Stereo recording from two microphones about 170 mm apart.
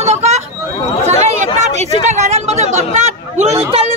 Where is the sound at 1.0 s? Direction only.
40° right (ahead or behind).